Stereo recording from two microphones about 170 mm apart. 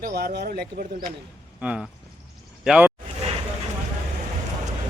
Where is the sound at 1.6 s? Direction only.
5° right (ahead or behind).